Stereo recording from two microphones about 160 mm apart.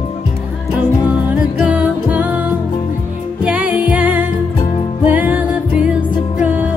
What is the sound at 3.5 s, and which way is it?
Music, 5° right (ahead or behind).